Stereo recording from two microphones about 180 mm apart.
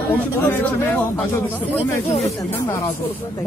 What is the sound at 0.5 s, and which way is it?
Speech, 10° left (ahead or behind).